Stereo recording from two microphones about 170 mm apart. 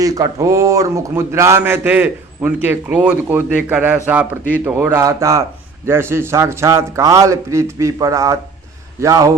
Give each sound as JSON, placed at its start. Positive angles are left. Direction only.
{"t": 0.0, "sound": "a man's voice", "side_deg": -20}